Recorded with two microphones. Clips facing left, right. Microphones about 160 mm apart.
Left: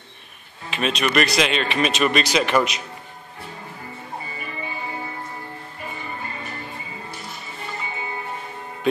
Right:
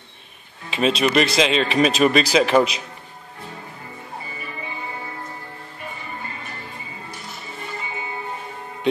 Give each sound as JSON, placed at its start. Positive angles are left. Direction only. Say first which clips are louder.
{"t": 0.7, "sound": "speech", "louder": "right 4 dB", "side_deg": -30}